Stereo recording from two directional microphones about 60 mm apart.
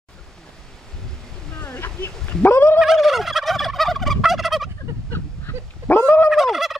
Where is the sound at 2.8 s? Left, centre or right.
Centre.